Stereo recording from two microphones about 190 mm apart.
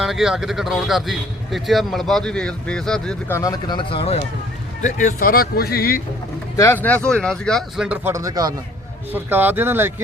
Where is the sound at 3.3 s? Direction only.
20° left (ahead or behind).